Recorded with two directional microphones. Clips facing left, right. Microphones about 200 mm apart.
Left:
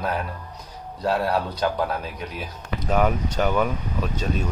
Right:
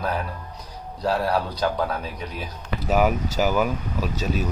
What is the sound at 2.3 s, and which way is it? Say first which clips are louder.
Speech: even; 5° right (ahead or behind).